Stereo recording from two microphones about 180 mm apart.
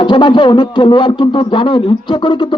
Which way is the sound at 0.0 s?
25° left (ahead or behind).